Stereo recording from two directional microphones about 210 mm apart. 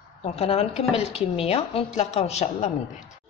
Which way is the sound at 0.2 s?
30° left (ahead or behind).